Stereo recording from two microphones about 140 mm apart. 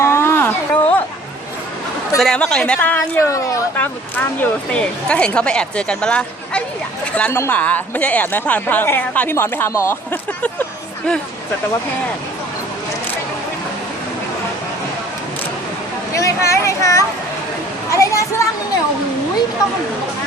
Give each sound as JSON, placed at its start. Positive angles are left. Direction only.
{"t": 0.0, "sound": "a sound", "side_deg": 20}
{"t": 2.1, "sound": "speech", "side_deg": 5}
{"t": 16.1, "sound": "a child's voice", "side_deg": 20}